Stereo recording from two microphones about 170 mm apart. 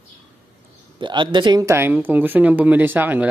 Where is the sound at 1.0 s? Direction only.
30° right (ahead or behind).